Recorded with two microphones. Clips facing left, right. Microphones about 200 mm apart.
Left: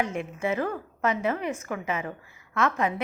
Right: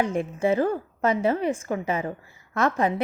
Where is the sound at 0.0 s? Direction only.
30° right (ahead or behind).